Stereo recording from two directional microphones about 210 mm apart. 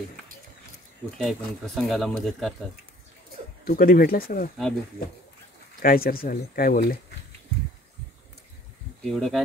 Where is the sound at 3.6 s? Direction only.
45° left (ahead or behind).